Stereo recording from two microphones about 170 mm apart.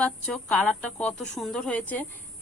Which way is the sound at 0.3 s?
10° left (ahead or behind).